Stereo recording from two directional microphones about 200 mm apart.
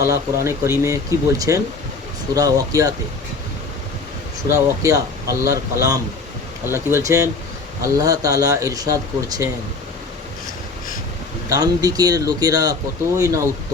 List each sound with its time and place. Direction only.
0.0 s speech: 15° right (ahead or behind)
4.4 s speech: 15° right (ahead or behind)
11.4 s speech: 20° right (ahead or behind)